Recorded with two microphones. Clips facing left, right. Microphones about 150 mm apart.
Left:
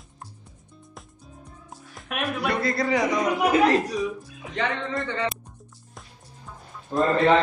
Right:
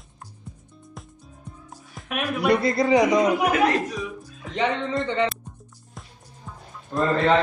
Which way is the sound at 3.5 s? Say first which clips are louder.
Left 2 dB; 30° left (ahead or behind).